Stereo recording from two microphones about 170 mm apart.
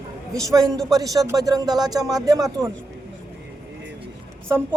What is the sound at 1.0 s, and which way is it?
Speech, 20° right (ahead or behind).